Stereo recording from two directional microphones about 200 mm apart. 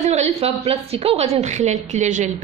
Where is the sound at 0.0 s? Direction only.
35° right (ahead or behind).